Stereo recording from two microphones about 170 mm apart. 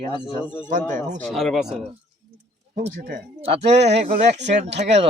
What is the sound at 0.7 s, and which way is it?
Speech, 50° right (ahead or behind).